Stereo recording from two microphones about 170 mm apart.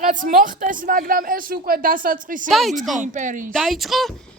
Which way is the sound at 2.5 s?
Centre (ahead or behind).